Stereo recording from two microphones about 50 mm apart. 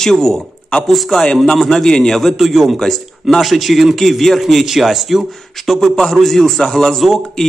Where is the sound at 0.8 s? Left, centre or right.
Centre.